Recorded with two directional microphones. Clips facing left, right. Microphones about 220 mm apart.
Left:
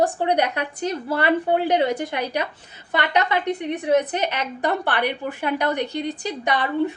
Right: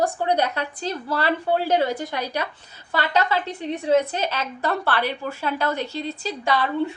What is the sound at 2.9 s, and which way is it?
A woman's voice, 20° left (ahead or behind).